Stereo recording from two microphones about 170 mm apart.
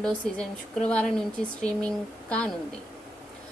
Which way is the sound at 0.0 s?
5° left (ahead or behind).